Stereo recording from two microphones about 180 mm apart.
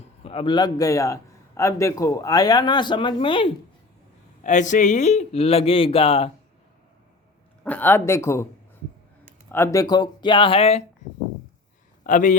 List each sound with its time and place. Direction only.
0.3 s a man's voice: 30° left (ahead or behind)
4.4 s speech: 40° left (ahead or behind)
7.6 s speech: 10° left (ahead or behind)
9.5 s a man's voice: 15° left (ahead or behind); by 10.8 s 35° left (ahead or behind)
12.0 s speech: 45° left (ahead or behind)